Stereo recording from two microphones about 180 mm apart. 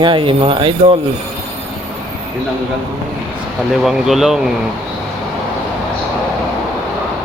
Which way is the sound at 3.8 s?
Centre (ahead or behind).